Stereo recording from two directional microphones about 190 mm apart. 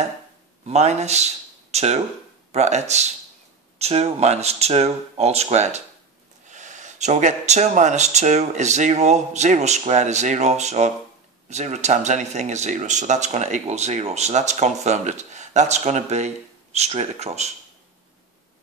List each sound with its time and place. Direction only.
0.7 s speech: 35° right (ahead or behind)